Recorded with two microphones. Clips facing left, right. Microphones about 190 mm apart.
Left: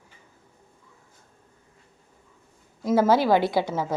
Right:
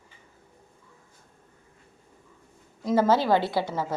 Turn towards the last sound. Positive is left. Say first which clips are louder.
# left 3 dB
turn(degrees=15)  # may be behind; listen again after turning